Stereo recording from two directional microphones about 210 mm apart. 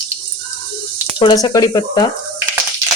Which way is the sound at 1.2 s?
20° left (ahead or behind).